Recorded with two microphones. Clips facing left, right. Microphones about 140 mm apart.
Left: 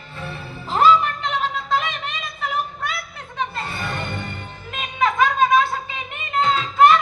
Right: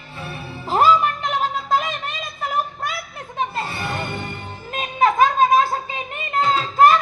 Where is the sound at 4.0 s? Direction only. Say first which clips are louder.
Right 1 dB; 50° right (ahead or behind).